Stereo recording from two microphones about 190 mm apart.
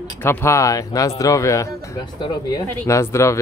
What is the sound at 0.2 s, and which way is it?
Speech, 10° left (ahead or behind).